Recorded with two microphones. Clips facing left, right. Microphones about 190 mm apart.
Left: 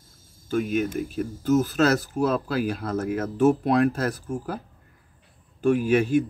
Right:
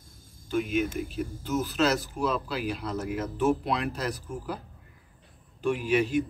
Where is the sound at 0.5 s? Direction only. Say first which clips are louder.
Left 3 dB; 45° left (ahead or behind).